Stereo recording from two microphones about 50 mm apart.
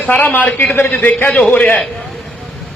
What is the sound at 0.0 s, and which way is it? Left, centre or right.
A man's voice, left.